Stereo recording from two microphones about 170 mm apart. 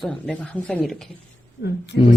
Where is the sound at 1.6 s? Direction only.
80° left.